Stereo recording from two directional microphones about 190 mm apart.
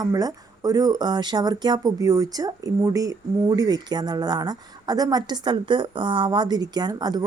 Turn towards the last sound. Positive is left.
turn(degrees=-20)  # may be behind; listen again after turning